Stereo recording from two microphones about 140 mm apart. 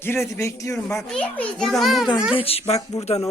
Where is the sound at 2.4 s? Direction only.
45° left (ahead or behind).